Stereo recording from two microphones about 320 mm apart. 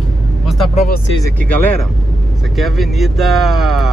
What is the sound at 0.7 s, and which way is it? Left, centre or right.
Speech, left.